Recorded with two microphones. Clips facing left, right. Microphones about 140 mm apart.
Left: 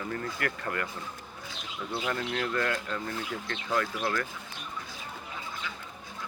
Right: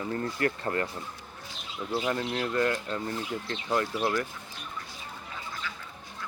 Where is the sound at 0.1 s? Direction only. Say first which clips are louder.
Right 6 dB; 30° right (ahead or behind).